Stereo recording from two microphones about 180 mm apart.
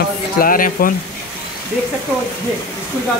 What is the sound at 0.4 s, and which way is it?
Speech, 50° left (ahead or behind).